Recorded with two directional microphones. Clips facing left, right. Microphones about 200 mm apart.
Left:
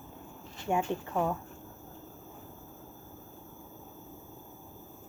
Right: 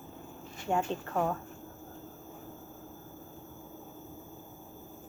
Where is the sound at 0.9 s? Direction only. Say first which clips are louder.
Left 1 dB; 10° left (ahead or behind).